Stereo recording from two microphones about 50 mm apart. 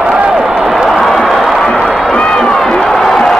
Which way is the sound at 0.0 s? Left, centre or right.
Right.